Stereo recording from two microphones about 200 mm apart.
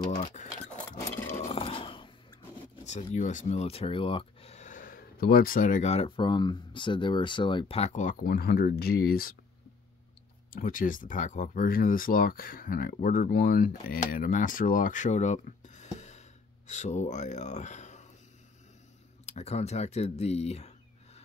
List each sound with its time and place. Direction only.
0.1 s keys jangling: 40° left (ahead or behind)
1.4 s a sound: 25° left (ahead or behind)
2.8 s speech: 35° left (ahead or behind)
10.5 s speech: 45° left (ahead or behind)
19.2 s speech: 35° left (ahead or behind)